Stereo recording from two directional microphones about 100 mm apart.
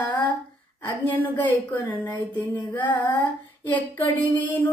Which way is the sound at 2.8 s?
15° left (ahead or behind).